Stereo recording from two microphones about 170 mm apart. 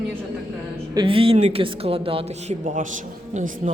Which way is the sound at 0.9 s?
30° right (ahead or behind).